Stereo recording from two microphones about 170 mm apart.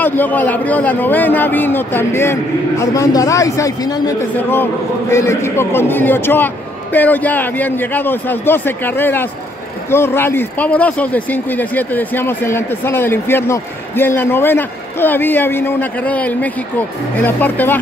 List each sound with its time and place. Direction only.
0.0 s a man's voice: 10° left (ahead or behind)
5.1 s speech: 15° left (ahead or behind)